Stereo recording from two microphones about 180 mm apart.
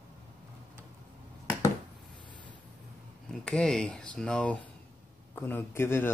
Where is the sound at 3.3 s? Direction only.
5° left (ahead or behind).